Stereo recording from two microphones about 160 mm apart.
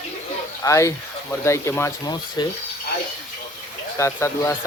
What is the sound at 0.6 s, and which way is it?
Speech, 20° left (ahead or behind).